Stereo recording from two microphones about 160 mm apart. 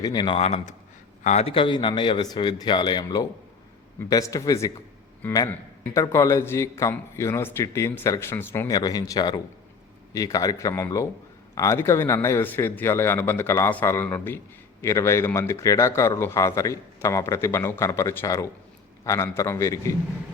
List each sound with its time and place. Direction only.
0.0 s a man's voice: 25° left (ahead or behind)